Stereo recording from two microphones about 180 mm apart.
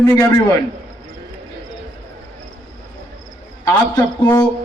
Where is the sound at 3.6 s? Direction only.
20° left (ahead or behind).